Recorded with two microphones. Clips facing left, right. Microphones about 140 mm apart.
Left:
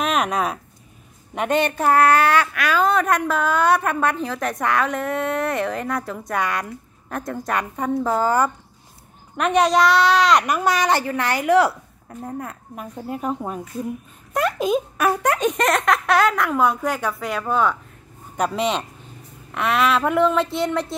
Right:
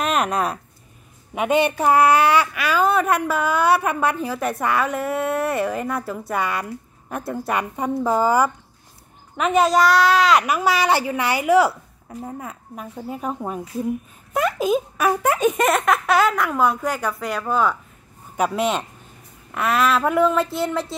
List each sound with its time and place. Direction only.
0.0 s a child's voice: centre (ahead or behind)